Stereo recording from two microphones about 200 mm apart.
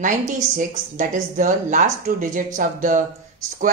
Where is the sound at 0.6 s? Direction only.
40° right (ahead or behind).